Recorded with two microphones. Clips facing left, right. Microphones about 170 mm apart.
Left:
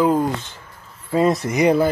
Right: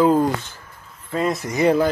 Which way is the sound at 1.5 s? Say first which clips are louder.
Right 2 dB; 15° left (ahead or behind).